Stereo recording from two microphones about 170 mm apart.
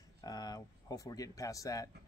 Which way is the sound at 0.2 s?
20° left (ahead or behind).